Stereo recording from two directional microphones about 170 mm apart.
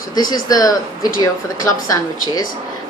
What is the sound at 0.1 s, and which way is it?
Speech, 25° left (ahead or behind).